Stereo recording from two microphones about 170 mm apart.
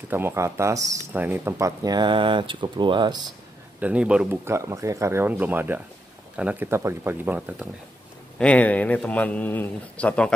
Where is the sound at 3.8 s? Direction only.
5° right (ahead or behind).